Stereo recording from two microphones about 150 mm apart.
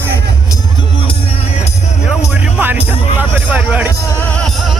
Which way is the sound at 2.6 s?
10° right (ahead or behind).